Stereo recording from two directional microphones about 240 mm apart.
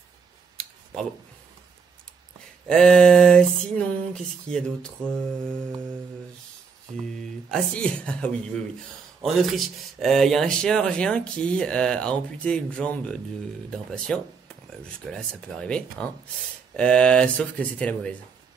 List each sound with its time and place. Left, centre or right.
2.7 s speech: centre
7.2 s speech: centre